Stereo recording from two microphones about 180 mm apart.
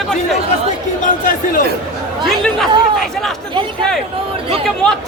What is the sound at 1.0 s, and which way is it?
Chatter, 50° left (ahead or behind).